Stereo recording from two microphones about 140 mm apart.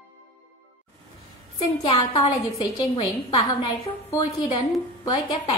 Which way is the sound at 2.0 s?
30° left (ahead or behind).